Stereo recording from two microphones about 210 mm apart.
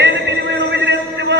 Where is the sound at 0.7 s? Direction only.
55° right (ahead or behind).